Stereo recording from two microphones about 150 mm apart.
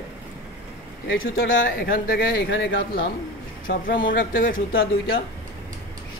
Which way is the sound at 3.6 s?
65° left (ahead or behind).